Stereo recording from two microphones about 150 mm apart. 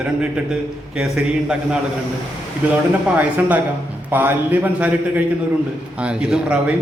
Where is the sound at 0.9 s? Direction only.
5° right (ahead or behind).